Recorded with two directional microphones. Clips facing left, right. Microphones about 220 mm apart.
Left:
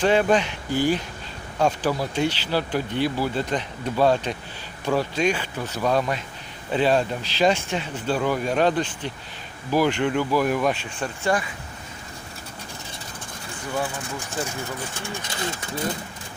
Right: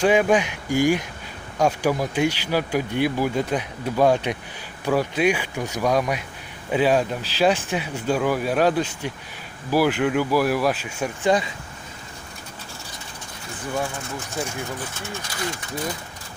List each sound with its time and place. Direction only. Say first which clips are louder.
0.0 s speech: right 1 dB; 10° right (ahead or behind)
15.0 s speech: left 1 dB; 20° left (ahead or behind)